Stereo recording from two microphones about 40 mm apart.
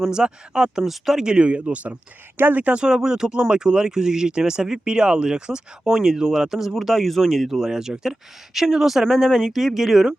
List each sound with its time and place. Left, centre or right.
0.1 s speech: centre
0.9 s speech: centre
1.2 s speech: right
2.4 s speech: right
2.7 s speech: centre
5.8 s speech: centre
6.7 s speech: centre